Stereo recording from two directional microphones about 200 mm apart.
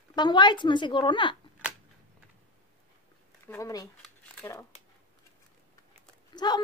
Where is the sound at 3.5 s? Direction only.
15° left (ahead or behind).